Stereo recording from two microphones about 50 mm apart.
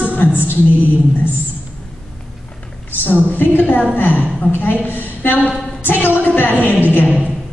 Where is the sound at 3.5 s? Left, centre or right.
Left.